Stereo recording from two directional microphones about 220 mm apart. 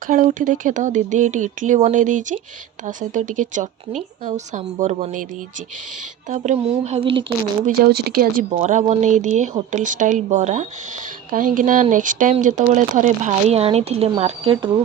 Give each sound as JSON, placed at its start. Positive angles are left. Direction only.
{"t": 0.1, "sound": "speech", "side_deg": -35}
{"t": 6.2, "sound": "speech", "side_deg": -35}
{"t": 7.9, "sound": "speech", "side_deg": -45}